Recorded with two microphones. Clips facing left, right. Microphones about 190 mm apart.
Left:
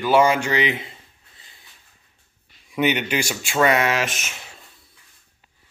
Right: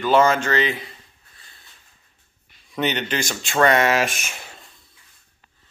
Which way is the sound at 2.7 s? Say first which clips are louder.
Left 2 dB; 10° left (ahead or behind).